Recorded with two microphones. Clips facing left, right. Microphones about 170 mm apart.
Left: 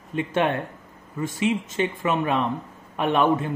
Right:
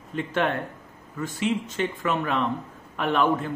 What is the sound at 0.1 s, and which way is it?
Speech, 20° left (ahead or behind).